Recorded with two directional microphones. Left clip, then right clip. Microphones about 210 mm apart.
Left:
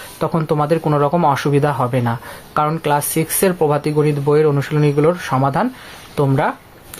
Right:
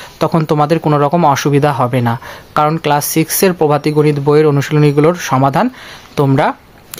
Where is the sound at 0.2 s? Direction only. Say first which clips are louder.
Right 5 dB; 40° right (ahead or behind).